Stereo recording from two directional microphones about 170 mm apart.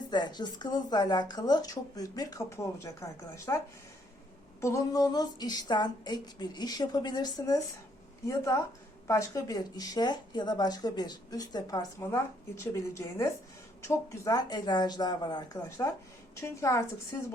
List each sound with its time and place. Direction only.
0.1 s speech: 25° left (ahead or behind)
4.6 s a woman's voice: 20° left (ahead or behind)